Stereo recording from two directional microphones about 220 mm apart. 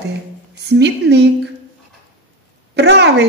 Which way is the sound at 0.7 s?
50° right (ahead or behind).